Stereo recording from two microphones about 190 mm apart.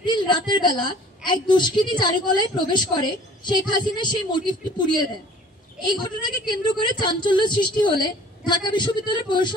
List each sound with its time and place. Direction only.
0.0 s a woman's voice: 25° left (ahead or behind)